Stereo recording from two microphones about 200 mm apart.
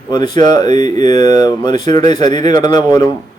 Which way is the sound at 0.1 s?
20° left (ahead or behind).